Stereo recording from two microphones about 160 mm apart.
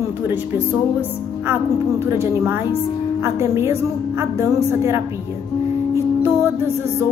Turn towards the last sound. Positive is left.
turn(degrees=-15)  # may be behind; listen again after turning